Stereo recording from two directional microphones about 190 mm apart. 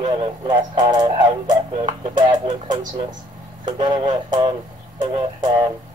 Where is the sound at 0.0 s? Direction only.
25° right (ahead or behind).